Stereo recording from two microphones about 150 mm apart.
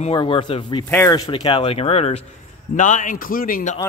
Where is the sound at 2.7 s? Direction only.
55° left (ahead or behind).